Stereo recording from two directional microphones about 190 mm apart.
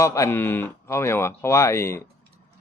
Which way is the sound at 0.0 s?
15° left (ahead or behind).